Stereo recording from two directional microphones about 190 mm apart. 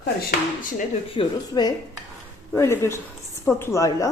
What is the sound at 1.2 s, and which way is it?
A woman's voice, 25° left (ahead or behind).